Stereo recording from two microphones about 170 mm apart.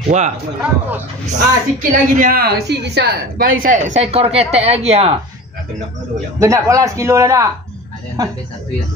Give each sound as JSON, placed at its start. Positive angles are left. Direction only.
{"t": 0.6, "sound": "speech", "side_deg": -10}
{"t": 1.2, "sound": "a woman's voice", "side_deg": -50}
{"t": 6.4, "sound": "a man's voice", "side_deg": -20}